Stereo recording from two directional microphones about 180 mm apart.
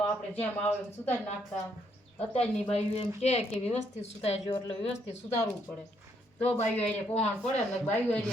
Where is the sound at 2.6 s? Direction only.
35° left (ahead or behind).